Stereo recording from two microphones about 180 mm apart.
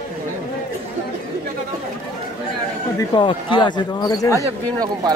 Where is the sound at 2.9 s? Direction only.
25° left (ahead or behind).